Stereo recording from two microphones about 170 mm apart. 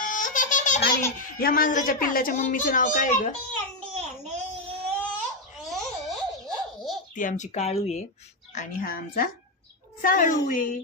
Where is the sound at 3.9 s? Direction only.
40° right (ahead or behind).